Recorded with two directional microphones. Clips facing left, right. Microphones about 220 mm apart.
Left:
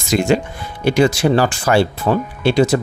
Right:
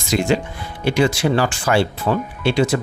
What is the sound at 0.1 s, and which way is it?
Speech, 45° left (ahead or behind).